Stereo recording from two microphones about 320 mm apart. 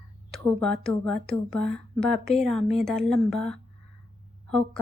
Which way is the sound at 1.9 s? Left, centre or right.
Centre.